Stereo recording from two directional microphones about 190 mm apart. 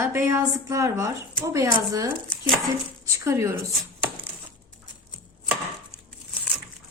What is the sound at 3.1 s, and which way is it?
Speech, 15° right (ahead or behind).